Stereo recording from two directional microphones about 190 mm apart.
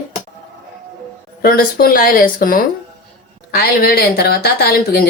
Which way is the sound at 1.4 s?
50° left (ahead or behind).